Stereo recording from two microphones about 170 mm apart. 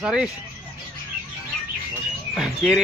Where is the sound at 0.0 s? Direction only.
5° right (ahead or behind).